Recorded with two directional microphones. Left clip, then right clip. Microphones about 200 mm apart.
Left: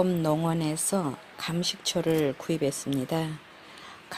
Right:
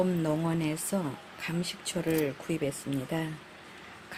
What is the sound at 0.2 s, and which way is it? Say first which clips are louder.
Speech: left 3 dB; 30° left (ahead or behind).